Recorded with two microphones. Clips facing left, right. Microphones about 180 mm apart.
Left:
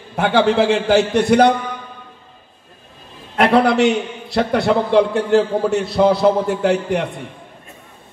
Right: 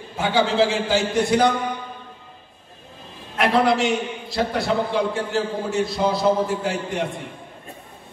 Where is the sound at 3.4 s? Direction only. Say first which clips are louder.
Left 5 dB; 65° left (ahead or behind).